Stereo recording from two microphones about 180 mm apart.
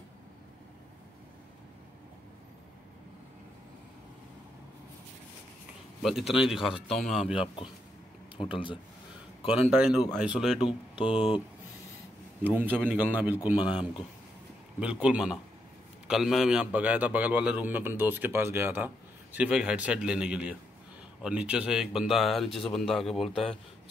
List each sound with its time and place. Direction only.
6.0 s a man's voice: centre (ahead or behind)
8.4 s speech: 30° left (ahead or behind)
9.7 s a man's voice: 5° right (ahead or behind)
10.7 s speech: 30° left (ahead or behind)
12.4 s a man's voice: 10° right (ahead or behind)
13.6 s speech: 30° left (ahead or behind)
14.8 s a man's voice: 5° right (ahead or behind)
23.3 s speech: 30° left (ahead or behind)